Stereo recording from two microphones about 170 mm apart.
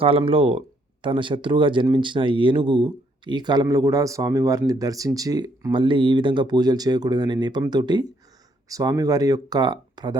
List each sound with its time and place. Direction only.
0.0 s speech: 35° right (ahead or behind)